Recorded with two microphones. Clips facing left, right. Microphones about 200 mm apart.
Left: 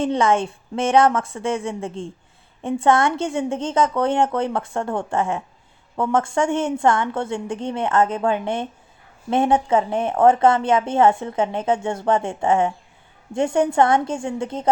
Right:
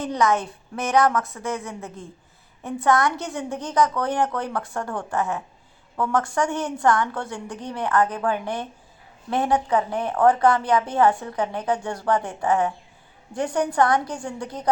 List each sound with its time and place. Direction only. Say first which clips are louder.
0.0 s a woman's voice: left 3 dB; 25° left (ahead or behind)